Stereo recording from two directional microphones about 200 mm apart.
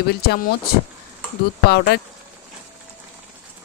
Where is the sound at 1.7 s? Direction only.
55° left (ahead or behind).